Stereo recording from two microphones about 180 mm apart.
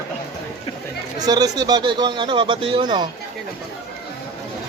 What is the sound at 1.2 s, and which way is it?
Speech, 20° right (ahead or behind).